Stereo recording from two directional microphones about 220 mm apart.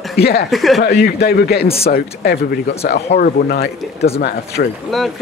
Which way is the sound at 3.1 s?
40° left (ahead or behind).